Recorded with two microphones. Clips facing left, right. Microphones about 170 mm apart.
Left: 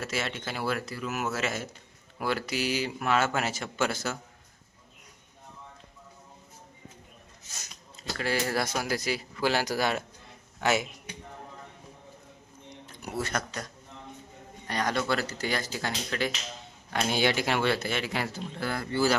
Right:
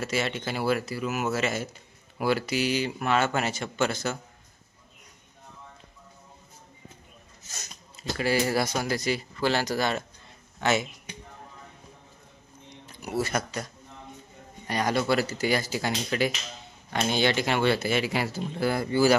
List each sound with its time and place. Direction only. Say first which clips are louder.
0.0 s speech: right 4 dB; centre (ahead or behind)
8.2 s speech: right 4 dB; 5° right (ahead or behind)
12.8 s speech: right 5 dB; 5° right (ahead or behind)
14.7 s speech: right 3 dB; 10° right (ahead or behind)
16.9 s speech: right 2 dB; 5° left (ahead or behind); by 19.1 s 10° right (ahead or behind)